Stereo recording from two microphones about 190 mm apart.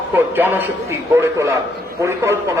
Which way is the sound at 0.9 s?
15° right (ahead or behind).